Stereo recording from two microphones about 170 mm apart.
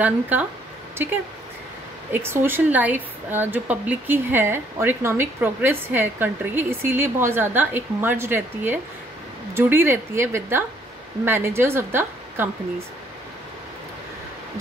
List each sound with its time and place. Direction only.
0.0 s a woman's voice: 10° right (ahead or behind)
2.1 s a woman's voice: 15° right (ahead or behind)